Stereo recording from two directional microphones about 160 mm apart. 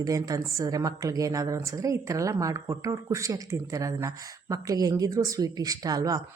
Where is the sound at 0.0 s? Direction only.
20° right (ahead or behind).